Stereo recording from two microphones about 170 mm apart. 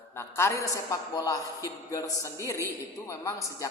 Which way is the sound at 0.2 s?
15° left (ahead or behind).